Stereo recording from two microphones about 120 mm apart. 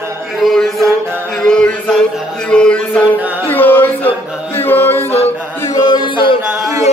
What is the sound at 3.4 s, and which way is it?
Chant, 15° left (ahead or behind).